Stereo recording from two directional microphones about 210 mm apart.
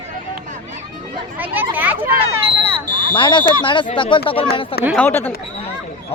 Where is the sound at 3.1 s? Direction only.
20° left (ahead or behind).